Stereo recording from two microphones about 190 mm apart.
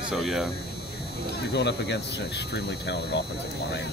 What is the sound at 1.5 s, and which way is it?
Speech, 65° left (ahead or behind).